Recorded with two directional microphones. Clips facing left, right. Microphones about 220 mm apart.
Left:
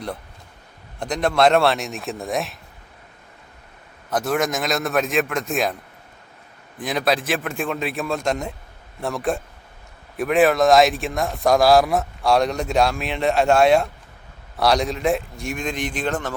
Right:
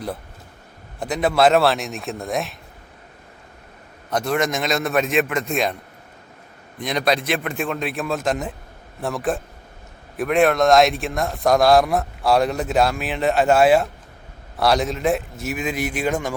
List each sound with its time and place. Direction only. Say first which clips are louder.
0.9 s a man's voice: right 1 dB; 5° right (ahead or behind)
4.1 s a man's voice: even; centre (ahead or behind)
6.7 s a man's voice: right 1 dB; centre (ahead or behind)